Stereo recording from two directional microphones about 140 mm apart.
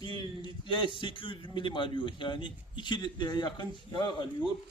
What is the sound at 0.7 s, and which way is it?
A man's voice, 35° left (ahead or behind).